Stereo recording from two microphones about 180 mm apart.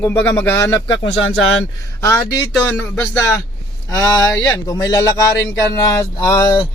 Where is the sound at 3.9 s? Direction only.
20° left (ahead or behind).